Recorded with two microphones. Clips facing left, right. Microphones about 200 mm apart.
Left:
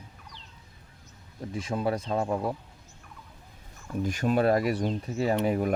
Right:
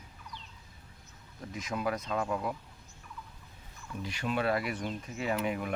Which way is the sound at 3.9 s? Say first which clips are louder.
Left 8 dB; 45° left (ahead or behind).